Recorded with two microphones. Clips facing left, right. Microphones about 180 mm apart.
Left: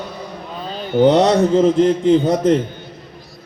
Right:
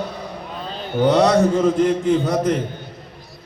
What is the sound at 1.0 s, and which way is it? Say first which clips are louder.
A man's voice: left 2 dB; 20° left (ahead or behind).